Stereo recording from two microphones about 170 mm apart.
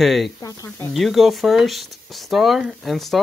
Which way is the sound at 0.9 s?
Centre (ahead or behind).